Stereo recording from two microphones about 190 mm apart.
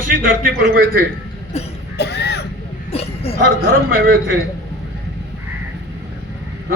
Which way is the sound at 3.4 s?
60° right (ahead or behind).